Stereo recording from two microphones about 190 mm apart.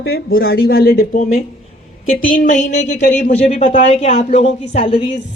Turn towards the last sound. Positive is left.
turn(degrees=30)  # may be behind; listen again after turning